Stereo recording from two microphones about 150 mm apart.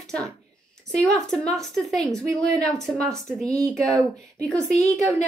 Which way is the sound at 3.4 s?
20° right (ahead or behind).